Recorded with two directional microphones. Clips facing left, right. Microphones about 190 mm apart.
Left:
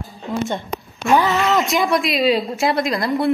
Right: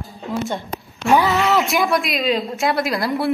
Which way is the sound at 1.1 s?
15° right (ahead or behind).